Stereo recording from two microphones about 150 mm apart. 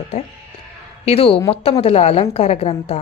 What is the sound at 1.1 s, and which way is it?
A woman's voice, 40° left (ahead or behind).